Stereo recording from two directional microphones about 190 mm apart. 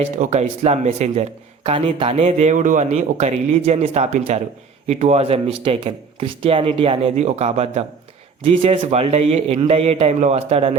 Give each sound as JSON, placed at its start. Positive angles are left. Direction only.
{"t": 0.0, "sound": "speech", "side_deg": -35}